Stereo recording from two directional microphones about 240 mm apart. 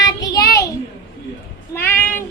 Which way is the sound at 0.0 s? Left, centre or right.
Centre.